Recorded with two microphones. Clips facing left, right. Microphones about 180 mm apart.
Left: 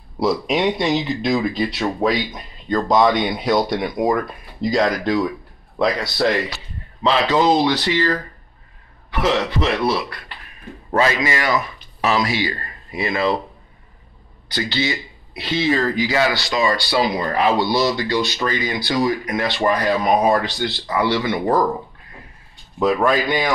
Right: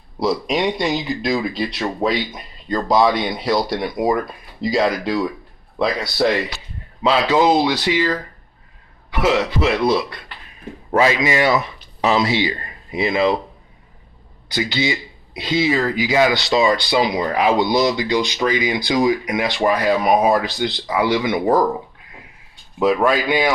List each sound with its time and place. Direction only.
0.2 s speech: centre (ahead or behind); by 13.4 s 20° right (ahead or behind)
14.5 s speech: 10° right (ahead or behind)
22.8 s speech: 10° right (ahead or behind)